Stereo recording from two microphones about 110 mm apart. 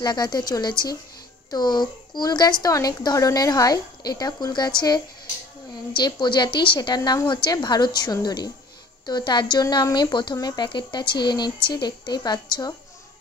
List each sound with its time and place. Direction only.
0.0 s a woman's voice: 40° left (ahead or behind)